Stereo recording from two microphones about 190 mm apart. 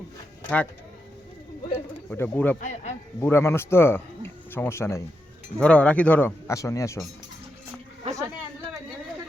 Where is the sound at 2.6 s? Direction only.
40° left (ahead or behind).